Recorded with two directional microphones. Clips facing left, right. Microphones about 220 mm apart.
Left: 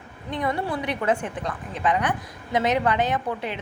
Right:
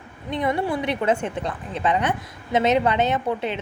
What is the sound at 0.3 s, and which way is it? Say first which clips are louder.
A woman's voice: right 3 dB; 20° right (ahead or behind).